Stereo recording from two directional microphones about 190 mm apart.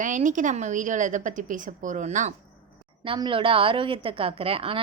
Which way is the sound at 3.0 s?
25° right (ahead or behind).